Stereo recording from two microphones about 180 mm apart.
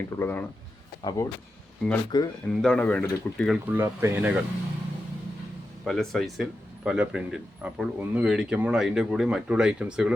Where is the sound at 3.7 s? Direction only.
10° right (ahead or behind).